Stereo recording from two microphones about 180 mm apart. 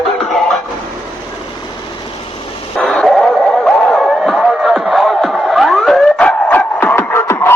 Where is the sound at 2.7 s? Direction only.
Centre (ahead or behind).